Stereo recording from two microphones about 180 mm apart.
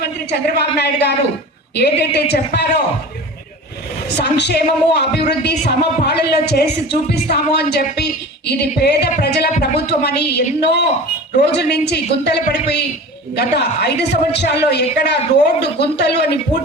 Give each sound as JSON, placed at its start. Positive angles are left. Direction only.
{"t": 0.3, "sound": "speech", "side_deg": 65}
{"t": 4.2, "sound": "a woman's voice", "side_deg": 65}